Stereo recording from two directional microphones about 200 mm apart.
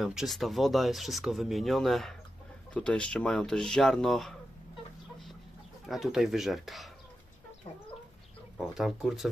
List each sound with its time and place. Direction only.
0.0 s speech: centre (ahead or behind)
5.9 s speech: centre (ahead or behind)
8.5 s speech: centre (ahead or behind)